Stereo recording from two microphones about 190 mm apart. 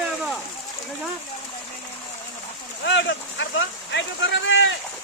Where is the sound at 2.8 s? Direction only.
70° left (ahead or behind).